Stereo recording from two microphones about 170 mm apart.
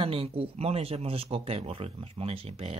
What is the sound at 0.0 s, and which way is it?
Speech, 35° right (ahead or behind).